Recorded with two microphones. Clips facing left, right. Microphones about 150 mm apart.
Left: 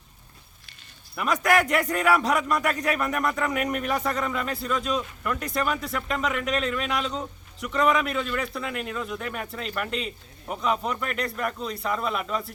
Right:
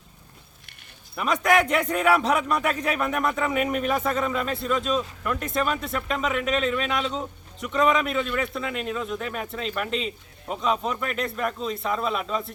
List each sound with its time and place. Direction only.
1.1 s a man's voice: centre (ahead or behind)